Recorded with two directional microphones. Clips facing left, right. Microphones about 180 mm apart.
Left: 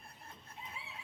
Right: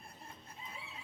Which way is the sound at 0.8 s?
55° right (ahead or behind).